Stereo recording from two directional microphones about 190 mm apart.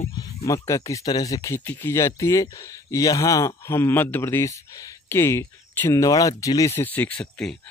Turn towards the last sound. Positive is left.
turn(degrees=5)  # may be behind; listen again after turning